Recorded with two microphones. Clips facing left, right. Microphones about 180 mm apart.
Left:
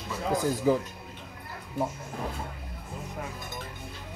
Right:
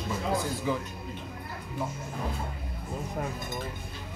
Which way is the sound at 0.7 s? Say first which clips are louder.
Left 7 dB; 40° left (ahead or behind).